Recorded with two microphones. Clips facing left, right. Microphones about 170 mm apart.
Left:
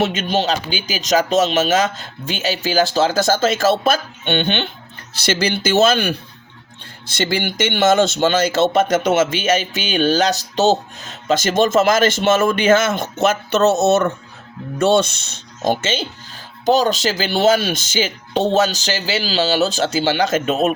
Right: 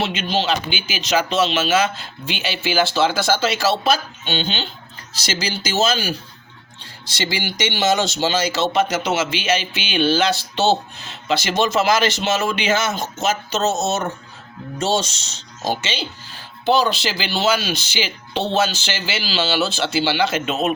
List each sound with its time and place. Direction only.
0.0 s speech: 45° left (ahead or behind)